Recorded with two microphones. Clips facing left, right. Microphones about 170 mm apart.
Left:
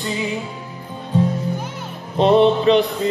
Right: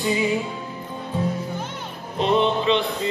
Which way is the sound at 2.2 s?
35° left (ahead or behind).